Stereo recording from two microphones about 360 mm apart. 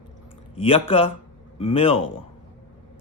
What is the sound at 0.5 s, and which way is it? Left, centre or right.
Speech, centre.